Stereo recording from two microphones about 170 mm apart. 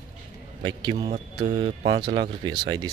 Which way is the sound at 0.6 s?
30° right (ahead or behind).